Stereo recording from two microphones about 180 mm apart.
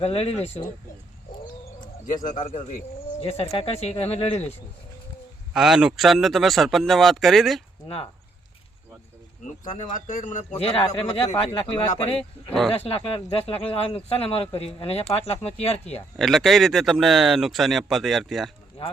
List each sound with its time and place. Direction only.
0.0 s speech: 35° left (ahead or behind)
2.2 s speech: 45° left (ahead or behind)
5.5 s speech: 5° right (ahead or behind)
9.9 s a man's voice: 45° left (ahead or behind)
12.5 s speech: centre (ahead or behind)
12.9 s speech: 35° left (ahead or behind)
16.0 s speech: centre (ahead or behind)